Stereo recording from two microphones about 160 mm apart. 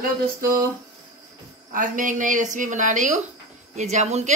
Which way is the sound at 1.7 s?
55° right (ahead or behind).